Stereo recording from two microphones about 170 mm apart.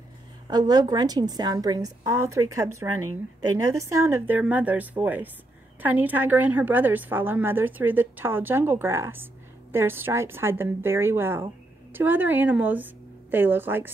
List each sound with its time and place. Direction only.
0.5 s a woman's voice: 25° right (ahead or behind)